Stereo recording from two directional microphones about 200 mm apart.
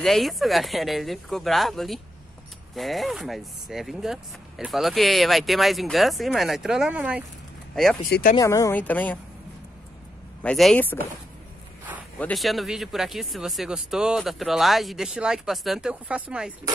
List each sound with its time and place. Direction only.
0.0 s speech: centre (ahead or behind)
8.1 s speech: 45° left (ahead or behind)
8.4 s speech: 15° left (ahead or behind)
10.4 s speech: 5° left (ahead or behind)
12.2 s speech: 5° left (ahead or behind)